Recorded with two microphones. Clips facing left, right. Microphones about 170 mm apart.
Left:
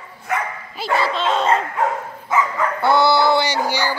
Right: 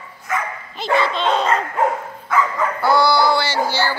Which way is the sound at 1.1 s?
Centre (ahead or behind).